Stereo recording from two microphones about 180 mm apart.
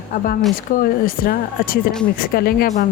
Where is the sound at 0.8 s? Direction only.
55° left (ahead or behind).